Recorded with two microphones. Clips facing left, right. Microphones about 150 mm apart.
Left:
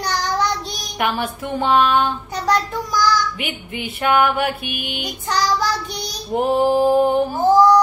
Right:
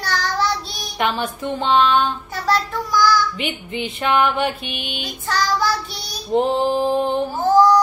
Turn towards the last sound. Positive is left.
turn(degrees=10)  # may be behind; listen again after turning